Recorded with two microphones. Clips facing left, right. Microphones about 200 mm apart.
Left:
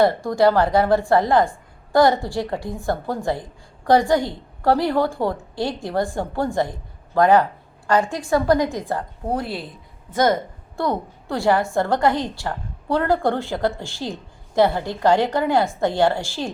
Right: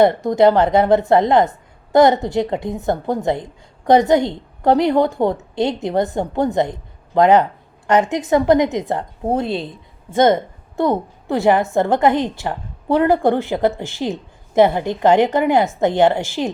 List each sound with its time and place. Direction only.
0.0 s a woman's voice: 20° right (ahead or behind)